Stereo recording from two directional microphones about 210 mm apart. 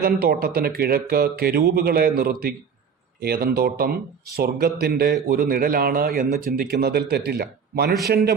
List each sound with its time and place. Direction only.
0.0 s a man's voice: 45° right (ahead or behind)
7.9 s a man's voice: centre (ahead or behind)